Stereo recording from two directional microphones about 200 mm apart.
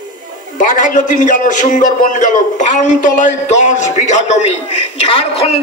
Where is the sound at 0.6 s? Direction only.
40° left (ahead or behind).